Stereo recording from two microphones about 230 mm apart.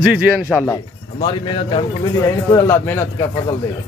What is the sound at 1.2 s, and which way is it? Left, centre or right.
Speech, left.